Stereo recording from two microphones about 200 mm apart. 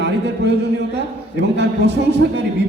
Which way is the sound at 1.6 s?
55° right (ahead or behind).